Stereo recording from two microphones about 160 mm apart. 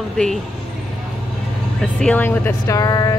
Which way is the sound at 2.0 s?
10° left (ahead or behind).